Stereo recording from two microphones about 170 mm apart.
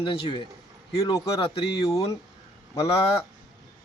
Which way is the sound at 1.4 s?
35° left (ahead or behind).